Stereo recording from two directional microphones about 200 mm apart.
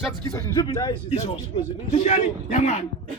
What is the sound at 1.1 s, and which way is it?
A man's voice, 30° left (ahead or behind).